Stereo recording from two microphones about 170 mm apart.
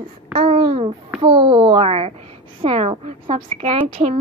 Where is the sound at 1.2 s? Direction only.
30° right (ahead or behind).